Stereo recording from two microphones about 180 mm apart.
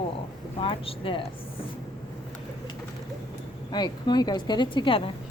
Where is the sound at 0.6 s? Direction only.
30° left (ahead or behind).